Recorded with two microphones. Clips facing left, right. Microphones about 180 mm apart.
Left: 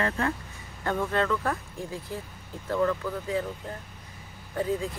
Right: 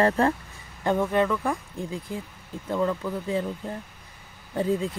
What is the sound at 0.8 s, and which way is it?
Speech, 20° right (ahead or behind).